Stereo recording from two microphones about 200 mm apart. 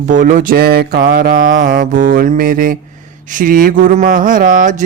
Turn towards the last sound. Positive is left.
turn(degrees=-40)  # may be behind; listen again after turning